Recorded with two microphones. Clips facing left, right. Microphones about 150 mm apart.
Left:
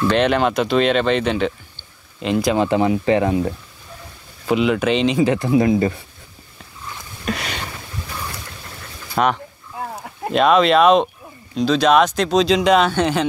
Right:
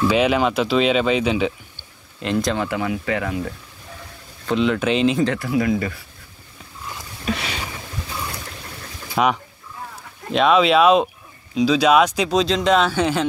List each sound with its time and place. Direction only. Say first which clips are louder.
0.1 s speech: left 1 dB; 5° right (ahead or behind)
2.5 s speech: left 6 dB; 25° left (ahead or behind)
4.5 s speech: left 2 dB; 5° left (ahead or behind)
5.2 s speech: left 4 dB; 20° left (ahead or behind)
7.2 s speech: even; centre (ahead or behind)
9.1 s speech: left 1 dB; 5° right (ahead or behind)